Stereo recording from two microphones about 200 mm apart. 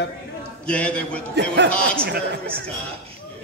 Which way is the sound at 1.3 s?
60° right (ahead or behind).